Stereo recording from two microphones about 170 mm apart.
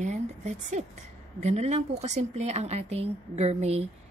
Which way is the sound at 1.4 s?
40° right (ahead or behind).